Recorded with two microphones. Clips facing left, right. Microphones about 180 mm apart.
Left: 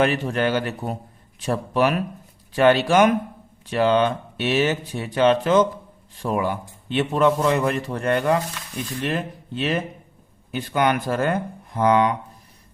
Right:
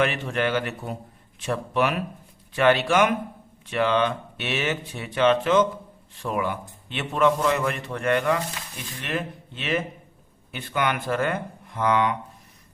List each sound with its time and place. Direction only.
0.0 s speech: 40° left (ahead or behind)